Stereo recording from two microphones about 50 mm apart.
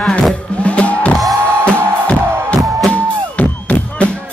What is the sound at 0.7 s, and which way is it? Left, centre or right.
Music, left.